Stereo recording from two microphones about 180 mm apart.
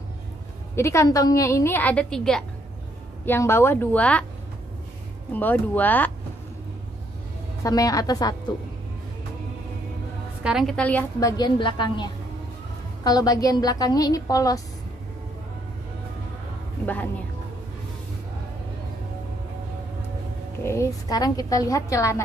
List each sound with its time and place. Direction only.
0.7 s a woman's voice: 15° left (ahead or behind)
5.3 s a woman's voice: 10° left (ahead or behind)
7.6 s a woman's voice: 20° left (ahead or behind)
10.4 s a woman's voice: centre (ahead or behind)
11.1 s a woman's voice: 20° left (ahead or behind)
16.8 s a woman's voice: 10° left (ahead or behind)
20.6 s a woman's voice: 15° left (ahead or behind)